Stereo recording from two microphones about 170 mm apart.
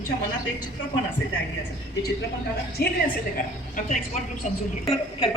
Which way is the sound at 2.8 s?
65° left (ahead or behind).